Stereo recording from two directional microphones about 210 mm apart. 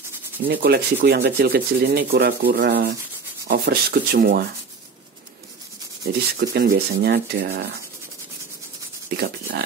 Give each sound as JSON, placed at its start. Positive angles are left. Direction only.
{"t": 0.5, "sound": "rub", "side_deg": -50}
{"t": 6.3, "sound": "rub", "side_deg": -50}
{"t": 9.1, "sound": "rub", "side_deg": -50}